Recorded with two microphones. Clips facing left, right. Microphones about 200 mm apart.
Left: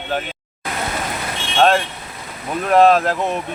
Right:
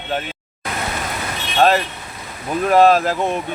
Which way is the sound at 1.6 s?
5° right (ahead or behind).